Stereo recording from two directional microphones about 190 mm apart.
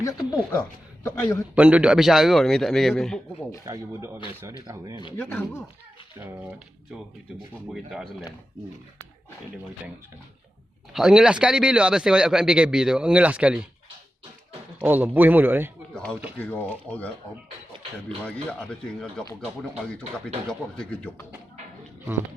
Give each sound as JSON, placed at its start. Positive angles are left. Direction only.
{"t": 0.0, "sound": "speech", "side_deg": 20}
{"t": 1.5, "sound": "speech", "side_deg": -5}
{"t": 3.7, "sound": "speech", "side_deg": -15}
{"t": 5.3, "sound": "speech", "side_deg": 10}
{"t": 7.7, "sound": "speech", "side_deg": 0}
{"t": 10.9, "sound": "speech", "side_deg": 0}
{"t": 14.8, "sound": "speech", "side_deg": -10}
{"t": 16.4, "sound": "speech", "side_deg": 10}
{"t": 18.3, "sound": "speech", "side_deg": 5}